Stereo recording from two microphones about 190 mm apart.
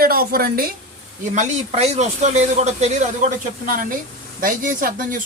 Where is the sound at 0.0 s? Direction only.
50° right (ahead or behind).